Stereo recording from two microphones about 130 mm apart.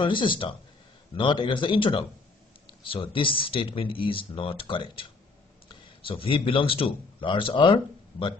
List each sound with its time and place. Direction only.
0.0 s a man's voice: 40° left (ahead or behind)